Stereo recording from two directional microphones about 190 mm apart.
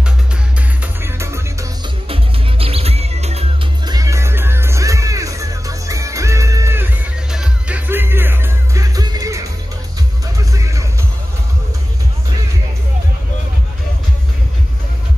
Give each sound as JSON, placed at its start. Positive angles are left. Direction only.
{"t": 0.6, "sound": "music", "side_deg": -15}
{"t": 2.6, "sound": "music", "side_deg": -30}
{"t": 3.8, "sound": "music", "side_deg": -20}